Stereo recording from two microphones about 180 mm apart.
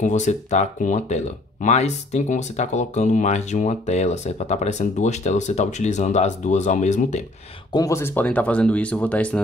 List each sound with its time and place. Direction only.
0.0 s speech: 40° left (ahead or behind)
7.7 s speech: 15° left (ahead or behind)